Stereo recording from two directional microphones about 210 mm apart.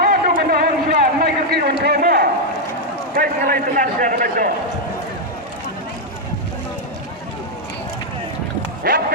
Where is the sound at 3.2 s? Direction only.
45° right (ahead or behind).